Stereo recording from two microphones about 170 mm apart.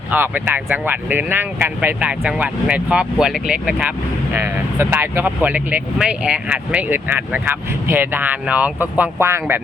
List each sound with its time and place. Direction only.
0.1 s speech: 10° right (ahead or behind)